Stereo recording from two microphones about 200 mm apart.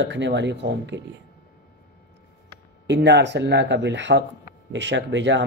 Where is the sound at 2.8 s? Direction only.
60° right (ahead or behind).